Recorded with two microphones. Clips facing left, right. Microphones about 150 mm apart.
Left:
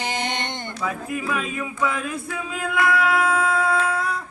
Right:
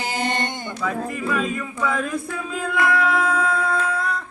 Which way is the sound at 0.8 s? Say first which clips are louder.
Right 2 dB; 5° left (ahead or behind).